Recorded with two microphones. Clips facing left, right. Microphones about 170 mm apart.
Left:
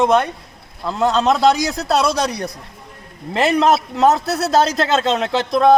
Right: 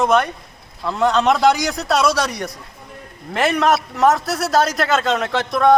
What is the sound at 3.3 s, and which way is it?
A man's voice, 25° left (ahead or behind).